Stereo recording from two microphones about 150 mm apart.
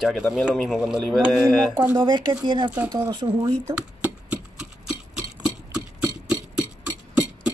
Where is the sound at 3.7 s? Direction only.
10° right (ahead or behind).